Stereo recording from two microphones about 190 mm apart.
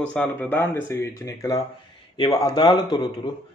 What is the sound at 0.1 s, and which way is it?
A man's voice, 10° left (ahead or behind).